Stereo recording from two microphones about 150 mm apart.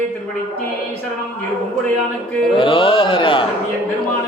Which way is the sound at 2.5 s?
35° left (ahead or behind).